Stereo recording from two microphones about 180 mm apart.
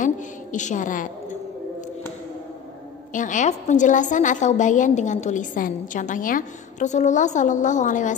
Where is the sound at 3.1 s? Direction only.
45° left (ahead or behind).